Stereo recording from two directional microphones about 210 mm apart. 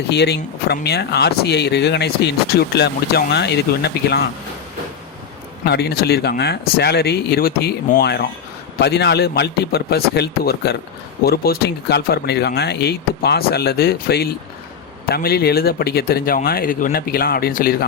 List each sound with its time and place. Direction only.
0.1 s speech: 50° left (ahead or behind)
5.6 s speech: 50° left (ahead or behind)